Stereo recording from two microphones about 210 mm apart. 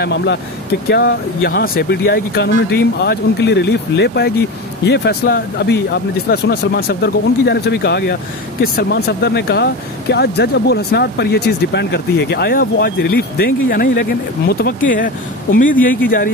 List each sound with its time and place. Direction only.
0.0 s speech: 55° left (ahead or behind)